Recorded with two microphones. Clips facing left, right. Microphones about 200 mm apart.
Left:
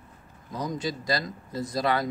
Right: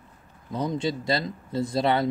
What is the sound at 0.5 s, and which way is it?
Speech, 30° right (ahead or behind).